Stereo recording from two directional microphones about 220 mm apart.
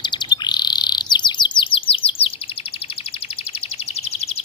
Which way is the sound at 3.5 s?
25° left (ahead or behind).